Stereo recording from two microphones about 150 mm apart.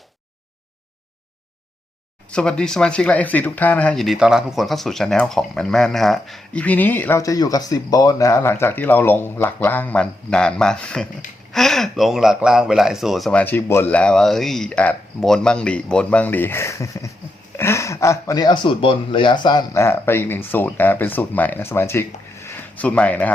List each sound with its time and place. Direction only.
2.3 s speech: 5° left (ahead or behind)
13.4 s speech: 15° left (ahead or behind)
19.8 s speech: 15° left (ahead or behind)